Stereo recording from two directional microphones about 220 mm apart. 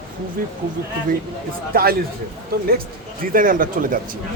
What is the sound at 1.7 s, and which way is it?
Speech, 45° right (ahead or behind).